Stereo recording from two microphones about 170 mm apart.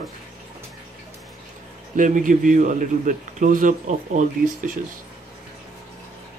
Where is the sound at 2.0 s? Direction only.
50° right (ahead or behind).